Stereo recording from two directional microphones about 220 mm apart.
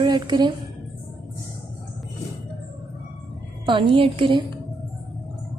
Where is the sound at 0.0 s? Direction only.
20° right (ahead or behind).